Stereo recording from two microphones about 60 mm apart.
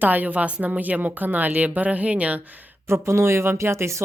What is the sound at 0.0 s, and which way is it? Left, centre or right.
Speech, right.